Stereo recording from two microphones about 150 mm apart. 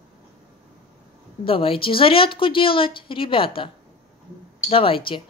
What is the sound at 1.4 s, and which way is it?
Speech, 35° left (ahead or behind).